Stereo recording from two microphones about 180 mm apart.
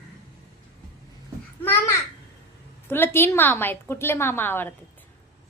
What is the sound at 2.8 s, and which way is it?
A woman's voice, 10° left (ahead or behind).